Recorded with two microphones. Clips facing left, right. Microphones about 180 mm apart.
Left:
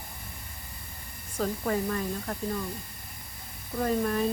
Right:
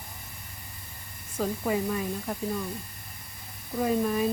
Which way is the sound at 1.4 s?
10° right (ahead or behind).